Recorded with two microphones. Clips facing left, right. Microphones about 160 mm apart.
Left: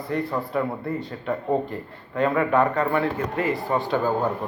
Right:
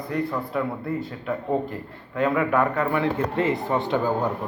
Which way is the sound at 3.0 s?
25° right (ahead or behind).